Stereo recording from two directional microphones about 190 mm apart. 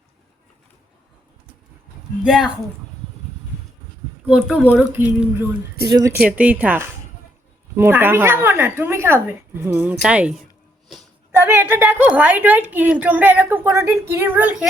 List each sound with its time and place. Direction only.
2.2 s speech: centre (ahead or behind)
4.3 s a woman's voice: 5° right (ahead or behind)
5.9 s speech: 20° right (ahead or behind)
6.1 s a woman's voice: 5° right (ahead or behind)